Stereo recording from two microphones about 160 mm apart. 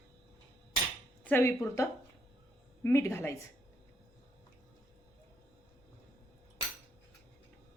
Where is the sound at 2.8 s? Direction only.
15° left (ahead or behind).